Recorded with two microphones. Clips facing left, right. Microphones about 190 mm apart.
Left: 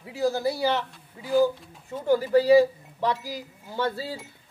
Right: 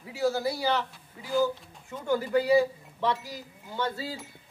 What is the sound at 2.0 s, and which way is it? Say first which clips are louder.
Speech: left 5 dB; 35° left (ahead or behind).